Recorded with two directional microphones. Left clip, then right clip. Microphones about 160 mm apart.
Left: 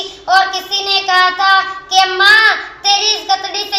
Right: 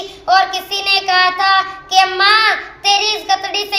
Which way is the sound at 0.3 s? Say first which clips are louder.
Left 1 dB; 15° right (ahead or behind).